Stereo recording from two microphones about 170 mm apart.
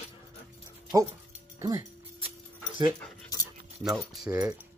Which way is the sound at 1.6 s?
15° right (ahead or behind).